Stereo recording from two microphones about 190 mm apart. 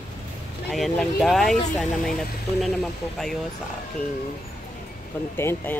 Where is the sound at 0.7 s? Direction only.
Centre (ahead or behind).